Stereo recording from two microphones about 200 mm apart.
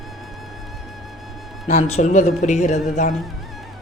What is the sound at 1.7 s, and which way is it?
Speech, 35° left (ahead or behind).